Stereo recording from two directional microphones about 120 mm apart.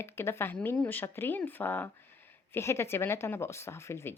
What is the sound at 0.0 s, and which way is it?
A woman's voice, 20° left (ahead or behind).